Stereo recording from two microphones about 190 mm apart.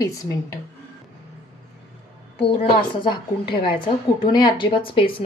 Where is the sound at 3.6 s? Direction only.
25° left (ahead or behind).